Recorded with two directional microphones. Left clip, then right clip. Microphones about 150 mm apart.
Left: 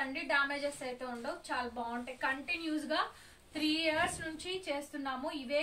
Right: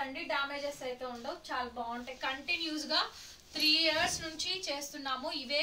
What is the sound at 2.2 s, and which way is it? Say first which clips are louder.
A woman's voice: right 1 dB; 10° left (ahead or behind).